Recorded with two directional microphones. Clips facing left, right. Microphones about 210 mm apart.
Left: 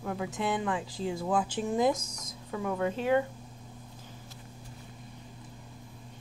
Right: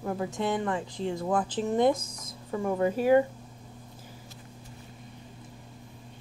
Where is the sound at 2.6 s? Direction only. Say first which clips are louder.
Right 5 dB; 10° right (ahead or behind).